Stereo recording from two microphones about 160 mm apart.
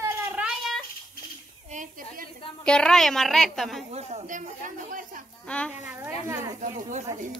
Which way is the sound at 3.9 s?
45° right (ahead or behind).